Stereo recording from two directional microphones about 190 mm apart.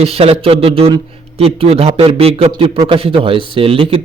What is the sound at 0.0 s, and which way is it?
A man's voice, 30° right (ahead or behind).